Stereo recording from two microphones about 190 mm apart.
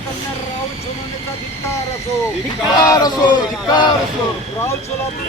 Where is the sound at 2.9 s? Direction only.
20° left (ahead or behind).